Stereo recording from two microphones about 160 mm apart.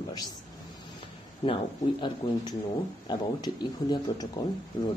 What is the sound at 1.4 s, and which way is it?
Speech, 30° left (ahead or behind).